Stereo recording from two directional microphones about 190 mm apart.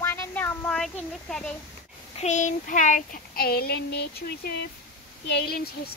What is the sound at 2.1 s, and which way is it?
Child singing, 40° left (ahead or behind).